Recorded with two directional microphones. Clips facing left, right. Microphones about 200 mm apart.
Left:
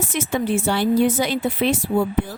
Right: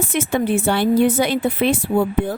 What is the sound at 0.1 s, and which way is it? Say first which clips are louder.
Speech: right 2 dB; 60° right (ahead or behind).